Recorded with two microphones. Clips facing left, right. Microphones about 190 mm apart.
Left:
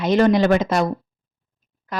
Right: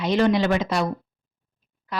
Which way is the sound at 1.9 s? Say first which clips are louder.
Left 2 dB; 45° left (ahead or behind).